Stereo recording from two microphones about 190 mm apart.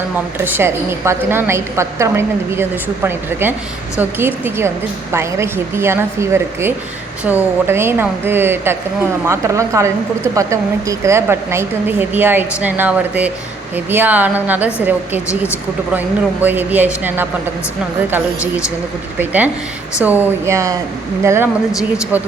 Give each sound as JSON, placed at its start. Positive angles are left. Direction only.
{"t": 0.3, "sound": "a woman's voice", "side_deg": -10}
{"t": 19.2, "sound": "a woman's voice", "side_deg": -10}